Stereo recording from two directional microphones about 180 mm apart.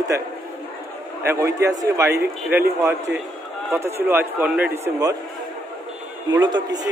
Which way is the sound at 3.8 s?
15° right (ahead or behind).